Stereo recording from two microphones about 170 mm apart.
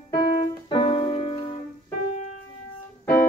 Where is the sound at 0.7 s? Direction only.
35° left (ahead or behind).